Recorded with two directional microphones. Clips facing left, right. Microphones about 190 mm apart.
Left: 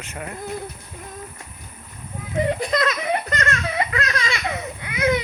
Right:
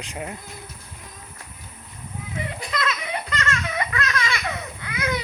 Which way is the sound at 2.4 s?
35° left (ahead or behind).